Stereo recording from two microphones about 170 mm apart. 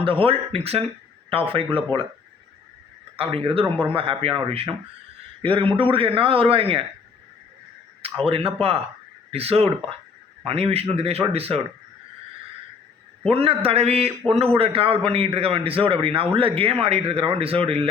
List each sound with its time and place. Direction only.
0.0 s a man's voice: 30° right (ahead or behind)
3.2 s a man's voice: 30° right (ahead or behind)
8.0 s a man's voice: 35° right (ahead or behind)
13.3 s a man's voice: 35° right (ahead or behind)